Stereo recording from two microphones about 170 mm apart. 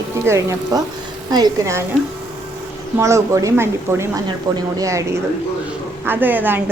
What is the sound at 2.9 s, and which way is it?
Speech, 15° right (ahead or behind).